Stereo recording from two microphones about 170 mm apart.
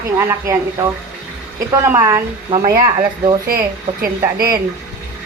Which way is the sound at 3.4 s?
60° right (ahead or behind).